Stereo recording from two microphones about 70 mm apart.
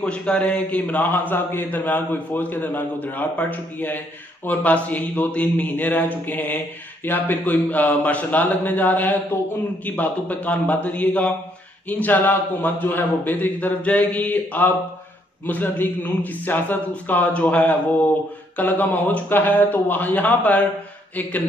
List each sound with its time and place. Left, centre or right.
0.0 s a man's voice: centre